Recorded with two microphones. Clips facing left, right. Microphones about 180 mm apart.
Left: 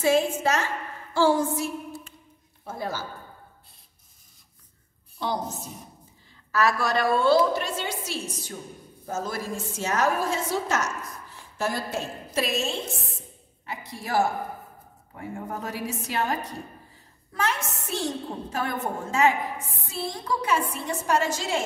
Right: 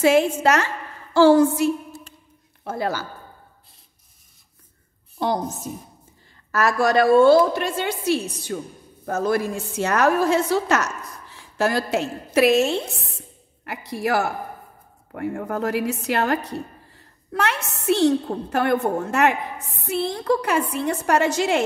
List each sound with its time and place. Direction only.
0.0 s a woman's voice: 75° right (ahead or behind)
6.5 s a woman's voice: 45° right (ahead or behind); by 21.6 s 65° right (ahead or behind)